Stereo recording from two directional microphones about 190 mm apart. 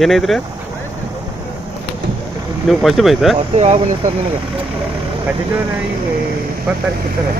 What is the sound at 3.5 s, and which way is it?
Speech, 35° right (ahead or behind).